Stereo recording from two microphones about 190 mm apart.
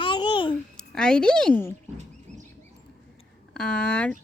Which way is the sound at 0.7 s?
5° left (ahead or behind).